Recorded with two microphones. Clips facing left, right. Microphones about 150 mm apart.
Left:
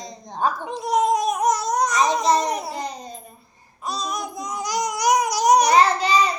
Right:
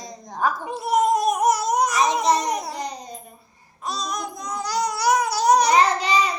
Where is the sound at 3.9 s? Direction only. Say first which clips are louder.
Left 1 dB; 5° left (ahead or behind).